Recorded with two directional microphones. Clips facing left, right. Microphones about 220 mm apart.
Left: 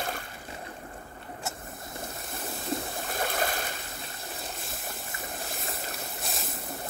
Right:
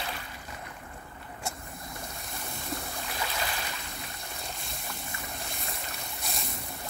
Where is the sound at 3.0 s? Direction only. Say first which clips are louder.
Left 5 dB; 50° left (ahead or behind).